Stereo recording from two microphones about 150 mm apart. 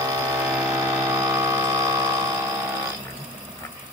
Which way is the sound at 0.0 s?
20° right (ahead or behind).